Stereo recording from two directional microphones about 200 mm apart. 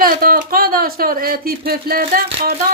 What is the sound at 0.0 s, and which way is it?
Speech, 45° right (ahead or behind).